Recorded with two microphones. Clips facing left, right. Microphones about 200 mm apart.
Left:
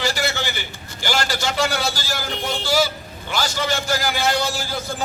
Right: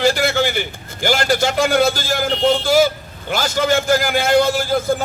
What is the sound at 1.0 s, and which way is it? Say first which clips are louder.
A man's voice: right 6 dB; 50° right (ahead or behind).